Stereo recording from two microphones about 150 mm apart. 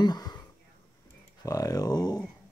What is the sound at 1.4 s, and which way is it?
Speech, 20° left (ahead or behind).